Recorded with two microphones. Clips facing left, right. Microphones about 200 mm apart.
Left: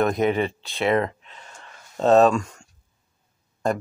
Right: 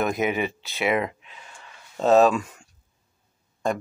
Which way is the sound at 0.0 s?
5° right (ahead or behind).